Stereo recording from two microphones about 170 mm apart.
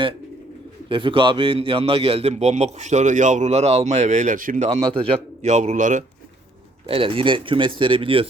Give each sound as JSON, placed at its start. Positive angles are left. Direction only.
{"t": 0.9, "sound": "a man's voice", "side_deg": -30}
{"t": 6.8, "sound": "a man's voice", "side_deg": -30}